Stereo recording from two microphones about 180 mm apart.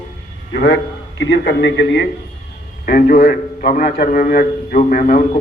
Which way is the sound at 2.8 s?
50° left (ahead or behind).